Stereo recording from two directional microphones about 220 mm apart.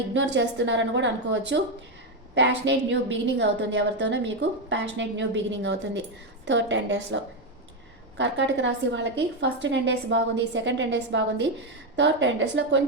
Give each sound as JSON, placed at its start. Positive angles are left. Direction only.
{"t": 0.1, "sound": "a woman's voice", "side_deg": -55}
{"t": 8.2, "sound": "a woman's voice", "side_deg": -55}